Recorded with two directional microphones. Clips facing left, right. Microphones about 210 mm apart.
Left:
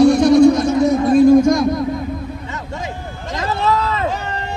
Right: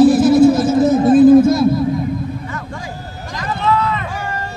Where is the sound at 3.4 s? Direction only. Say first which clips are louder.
Right 1 dB; 30° left (ahead or behind).